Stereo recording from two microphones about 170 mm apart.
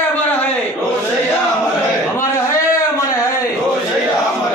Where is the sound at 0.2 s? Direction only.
10° left (ahead or behind).